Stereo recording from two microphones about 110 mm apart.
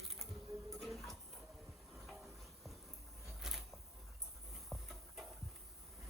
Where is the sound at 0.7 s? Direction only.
Centre (ahead or behind).